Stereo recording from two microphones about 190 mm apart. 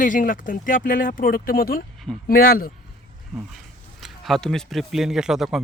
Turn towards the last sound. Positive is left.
turn(degrees=0)  # may be behind; listen again after turning